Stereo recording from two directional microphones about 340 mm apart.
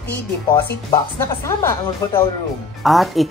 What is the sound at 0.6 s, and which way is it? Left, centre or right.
A woman's voice, centre.